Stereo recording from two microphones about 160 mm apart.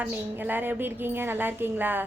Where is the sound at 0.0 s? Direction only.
10° right (ahead or behind).